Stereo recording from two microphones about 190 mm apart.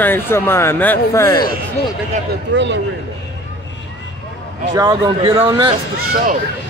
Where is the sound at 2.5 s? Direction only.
70° right (ahead or behind).